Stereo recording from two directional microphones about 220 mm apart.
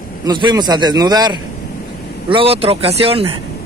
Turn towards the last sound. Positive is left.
turn(degrees=-25)  # may be behind; listen again after turning